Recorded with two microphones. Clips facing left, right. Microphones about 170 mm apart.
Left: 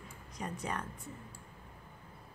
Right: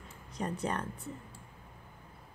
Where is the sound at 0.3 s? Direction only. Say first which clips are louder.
Right 5 dB; 30° right (ahead or behind).